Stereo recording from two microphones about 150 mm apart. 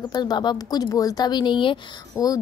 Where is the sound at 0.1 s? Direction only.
30° left (ahead or behind).